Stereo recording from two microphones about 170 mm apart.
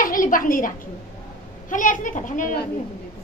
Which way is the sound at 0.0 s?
55° left (ahead or behind).